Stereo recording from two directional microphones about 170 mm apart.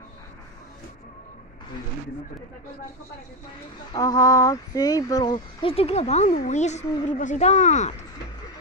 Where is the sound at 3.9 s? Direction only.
20° left (ahead or behind); by 7.9 s 45° left (ahead or behind).